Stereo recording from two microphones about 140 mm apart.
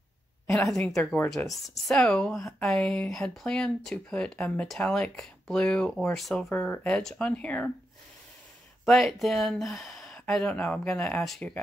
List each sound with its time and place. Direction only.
0.6 s a woman's voice: 5° left (ahead or behind)
8.8 s a woman's voice: centre (ahead or behind)
9.6 s a sound: centre (ahead or behind)
10.3 s a woman's voice: 5° left (ahead or behind)